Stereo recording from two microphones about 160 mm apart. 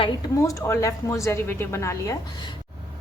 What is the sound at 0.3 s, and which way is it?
A woman's voice, 20° left (ahead or behind).